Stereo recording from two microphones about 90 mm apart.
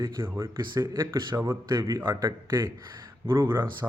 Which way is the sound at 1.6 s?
55° right (ahead or behind).